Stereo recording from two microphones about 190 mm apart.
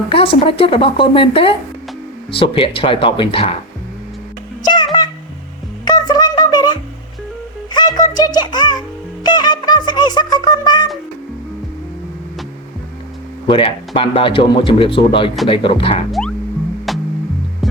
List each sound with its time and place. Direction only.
0.1 s speech: 30° left (ahead or behind)
4.6 s music: 25° left (ahead or behind)
13.5 s speech: 30° left (ahead or behind)
16.2 s music: 5° left (ahead or behind)